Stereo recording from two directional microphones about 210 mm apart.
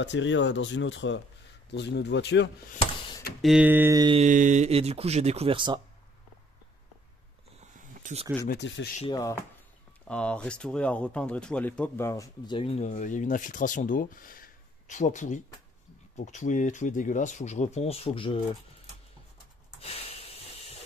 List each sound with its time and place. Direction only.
0.0 s speech: 60° left (ahead or behind)
2.7 s a sound: 25° left (ahead or behind)
3.4 s speech: 5° right (ahead or behind)
4.0 s speech: 25° right (ahead or behind)
4.3 s speech: 35° right (ahead or behind)
7.7 s a sound: 40° right (ahead or behind)
8.5 s speech: 60° left (ahead or behind)
9.0 s speech: 20° left (ahead or behind)
10.0 s speech: 5° left (ahead or behind); by 18.4 s 25° left (ahead or behind)
19.8 s hiss: 30° left (ahead or behind)